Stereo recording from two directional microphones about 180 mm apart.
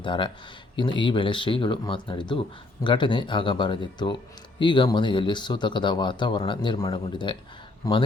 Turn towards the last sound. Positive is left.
turn(degrees=20)  # may be behind; listen again after turning